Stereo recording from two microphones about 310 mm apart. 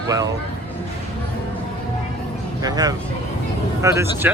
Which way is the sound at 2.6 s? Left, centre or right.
Centre.